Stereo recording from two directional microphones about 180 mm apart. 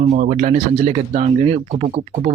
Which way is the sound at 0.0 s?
45° right (ahead or behind).